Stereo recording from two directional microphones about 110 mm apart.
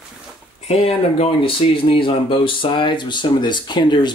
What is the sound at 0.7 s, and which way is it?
Speech, 65° left (ahead or behind).